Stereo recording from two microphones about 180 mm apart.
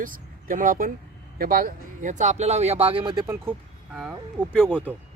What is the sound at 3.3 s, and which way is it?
Speech, 10° right (ahead or behind).